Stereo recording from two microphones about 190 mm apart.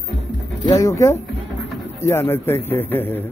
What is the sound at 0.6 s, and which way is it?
Speech, 15° left (ahead or behind).